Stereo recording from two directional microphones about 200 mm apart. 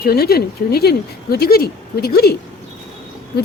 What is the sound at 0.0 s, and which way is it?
Speech, 50° left (ahead or behind).